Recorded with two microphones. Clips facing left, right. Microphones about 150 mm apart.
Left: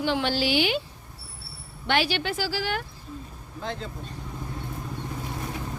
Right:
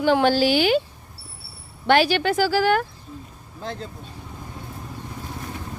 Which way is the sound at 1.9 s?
45° right (ahead or behind).